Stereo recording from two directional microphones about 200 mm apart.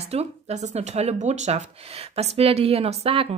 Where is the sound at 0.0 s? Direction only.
30° right (ahead or behind).